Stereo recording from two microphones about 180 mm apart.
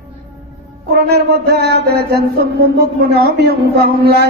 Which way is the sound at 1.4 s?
65° right (ahead or behind).